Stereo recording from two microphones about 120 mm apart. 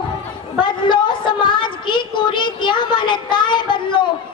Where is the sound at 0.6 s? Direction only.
40° left (ahead or behind).